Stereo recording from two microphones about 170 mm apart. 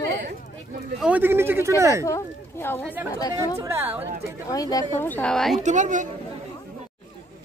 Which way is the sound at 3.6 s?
15° right (ahead or behind).